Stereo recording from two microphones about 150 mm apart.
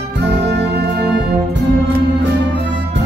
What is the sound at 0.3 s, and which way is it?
Music, 90° right.